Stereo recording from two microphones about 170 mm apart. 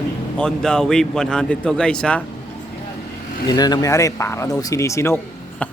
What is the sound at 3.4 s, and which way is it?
Speech, 25° left (ahead or behind).